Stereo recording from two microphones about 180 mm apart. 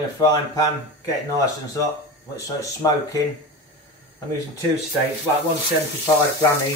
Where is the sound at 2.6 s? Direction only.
20° left (ahead or behind).